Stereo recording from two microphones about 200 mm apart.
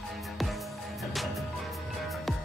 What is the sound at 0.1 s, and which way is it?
Music, centre (ahead or behind).